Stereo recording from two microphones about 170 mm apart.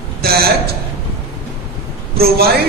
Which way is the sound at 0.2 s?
65° right (ahead or behind).